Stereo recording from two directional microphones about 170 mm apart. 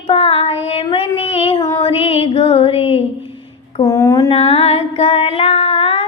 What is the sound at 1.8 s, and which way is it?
Child singing, 35° left (ahead or behind).